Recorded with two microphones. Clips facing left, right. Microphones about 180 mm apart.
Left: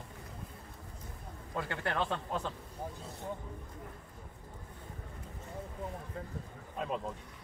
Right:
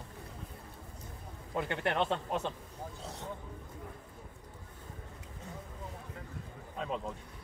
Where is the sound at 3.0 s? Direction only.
80° right.